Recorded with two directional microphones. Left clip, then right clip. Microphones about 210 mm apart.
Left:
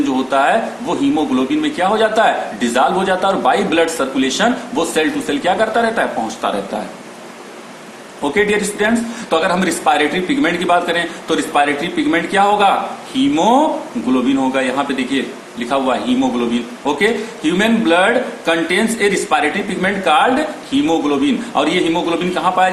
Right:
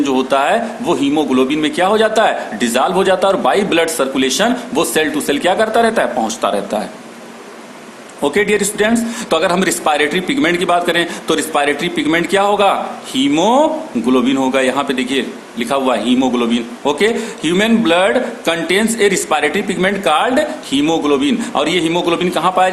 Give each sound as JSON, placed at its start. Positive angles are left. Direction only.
{"t": 0.0, "sound": "a man's voice", "side_deg": -50}
{"t": 8.2, "sound": "a man's voice", "side_deg": -55}